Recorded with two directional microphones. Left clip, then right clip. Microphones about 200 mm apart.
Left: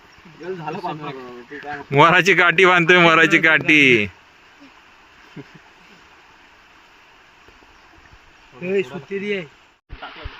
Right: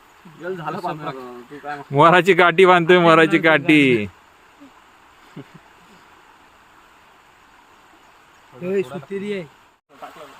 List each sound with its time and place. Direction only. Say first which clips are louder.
0.4 s speech: right 1 dB; 5° right (ahead or behind)
5.4 s speech: left 1 dB; 10° right (ahead or behind)
8.6 s speech: left 1 dB; 25° right (ahead or behind)